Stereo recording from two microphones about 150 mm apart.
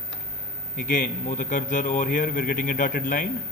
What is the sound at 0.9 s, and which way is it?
A man's voice, 60° left (ahead or behind).